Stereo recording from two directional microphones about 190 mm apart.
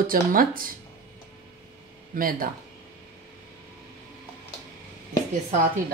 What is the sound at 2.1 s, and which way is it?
Speech, 50° right (ahead or behind).